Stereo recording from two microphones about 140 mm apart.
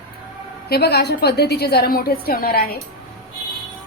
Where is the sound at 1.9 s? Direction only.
90° left.